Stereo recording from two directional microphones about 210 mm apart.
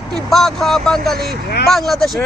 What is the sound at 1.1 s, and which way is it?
Speech, 50° right (ahead or behind).